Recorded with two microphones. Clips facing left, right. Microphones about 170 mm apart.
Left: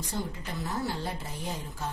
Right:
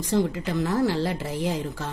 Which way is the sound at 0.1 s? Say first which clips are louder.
Right 13 dB; 90° right.